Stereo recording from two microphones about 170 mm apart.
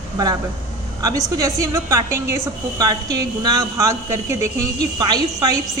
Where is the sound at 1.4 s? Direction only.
20° right (ahead or behind).